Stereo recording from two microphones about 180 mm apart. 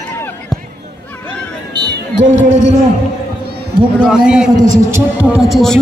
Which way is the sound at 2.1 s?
40° right (ahead or behind).